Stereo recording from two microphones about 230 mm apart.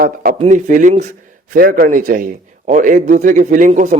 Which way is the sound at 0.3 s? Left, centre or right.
Right.